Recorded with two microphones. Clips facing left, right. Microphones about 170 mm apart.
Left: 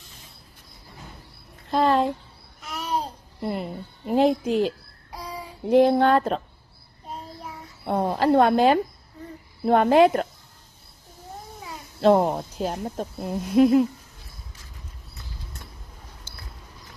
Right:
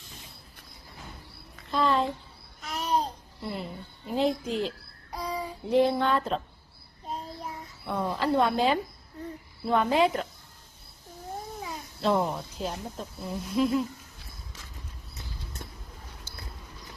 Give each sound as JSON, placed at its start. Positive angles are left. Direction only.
{"t": 1.7, "sound": "a sound", "side_deg": 55}
{"t": 2.6, "sound": "babbling", "side_deg": 5}
{"t": 3.4, "sound": "a woman's voice", "side_deg": 55}
{"t": 7.9, "sound": "a woman's voice", "side_deg": 45}
{"t": 12.0, "sound": "a woman's voice", "side_deg": 50}